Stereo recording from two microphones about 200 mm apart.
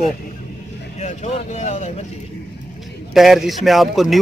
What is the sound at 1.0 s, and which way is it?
Speech, 35° left (ahead or behind).